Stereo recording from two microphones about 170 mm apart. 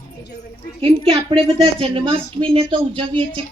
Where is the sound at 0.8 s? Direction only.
30° right (ahead or behind).